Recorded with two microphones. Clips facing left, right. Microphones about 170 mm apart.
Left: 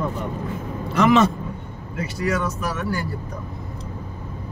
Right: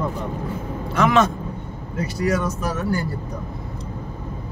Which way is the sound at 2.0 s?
40° right (ahead or behind).